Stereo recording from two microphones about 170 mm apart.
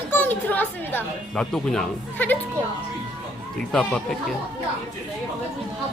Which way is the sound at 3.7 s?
5° left (ahead or behind).